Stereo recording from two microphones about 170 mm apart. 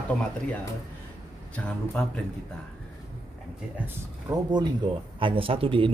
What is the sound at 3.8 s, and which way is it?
A man's voice, 20° right (ahead or behind).